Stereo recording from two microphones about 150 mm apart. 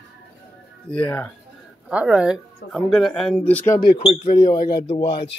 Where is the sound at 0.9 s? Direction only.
10° left (ahead or behind).